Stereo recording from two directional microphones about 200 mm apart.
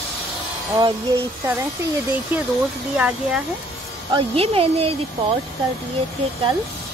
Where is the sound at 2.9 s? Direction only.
5° right (ahead or behind).